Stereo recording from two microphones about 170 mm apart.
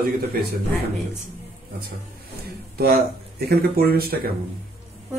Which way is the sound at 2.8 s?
65° right (ahead or behind).